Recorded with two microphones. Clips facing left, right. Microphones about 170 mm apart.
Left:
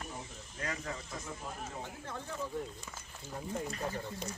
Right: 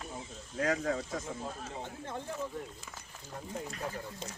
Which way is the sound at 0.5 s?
80° right.